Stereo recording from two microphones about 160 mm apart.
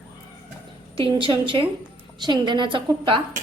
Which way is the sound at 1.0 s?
30° right (ahead or behind).